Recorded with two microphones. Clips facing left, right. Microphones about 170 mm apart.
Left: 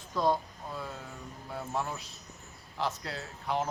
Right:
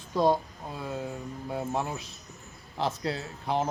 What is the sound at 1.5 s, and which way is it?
A man's voice, 20° right (ahead or behind).